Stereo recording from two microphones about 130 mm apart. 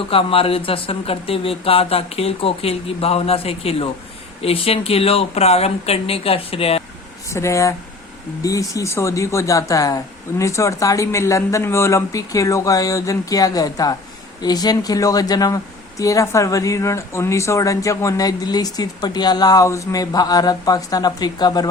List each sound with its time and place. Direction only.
0.1 s speech: 45° left (ahead or behind)
7.3 s speech: 20° left (ahead or behind)